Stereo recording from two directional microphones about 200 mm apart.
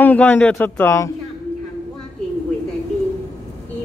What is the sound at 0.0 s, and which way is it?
Speech, 10° left (ahead or behind).